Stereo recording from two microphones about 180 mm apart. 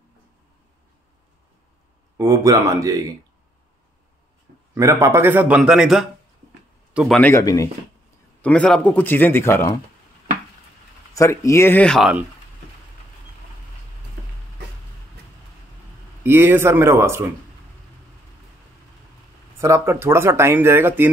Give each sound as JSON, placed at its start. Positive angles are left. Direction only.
{"t": 2.1, "sound": "speech", "side_deg": -20}
{"t": 4.7, "sound": "a man's voice", "side_deg": -15}
{"t": 6.9, "sound": "a sound", "side_deg": -5}
{"t": 7.2, "sound": "a man's voice", "side_deg": 15}
{"t": 8.4, "sound": "a man's voice", "side_deg": 5}
{"t": 11.1, "sound": "a man's voice", "side_deg": 15}
{"t": 16.3, "sound": "speech", "side_deg": -15}
{"t": 19.6, "sound": "speech", "side_deg": -15}